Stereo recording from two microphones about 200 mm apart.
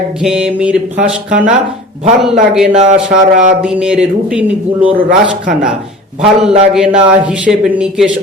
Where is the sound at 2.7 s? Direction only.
35° right (ahead or behind).